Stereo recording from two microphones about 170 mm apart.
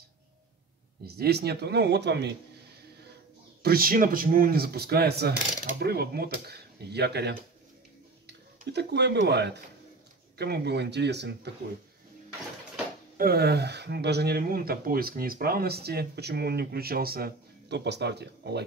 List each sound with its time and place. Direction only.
1.0 s speech: 70° right (ahead or behind); by 2.3 s 85° right
3.6 s speech: 60° right (ahead or behind); by 9.6 s 85° right
10.3 s speech: 70° right (ahead or behind)
13.2 s speech: 65° right (ahead or behind)